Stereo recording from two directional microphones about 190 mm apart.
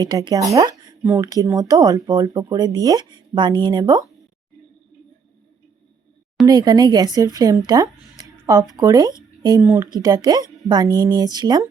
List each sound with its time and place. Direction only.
0.0 s speech: 20° right (ahead or behind)
6.4 s speech: 20° right (ahead or behind)